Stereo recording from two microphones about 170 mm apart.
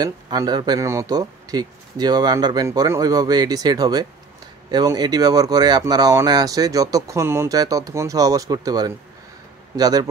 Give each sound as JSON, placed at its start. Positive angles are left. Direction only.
{"t": 0.0, "sound": "speech", "side_deg": -25}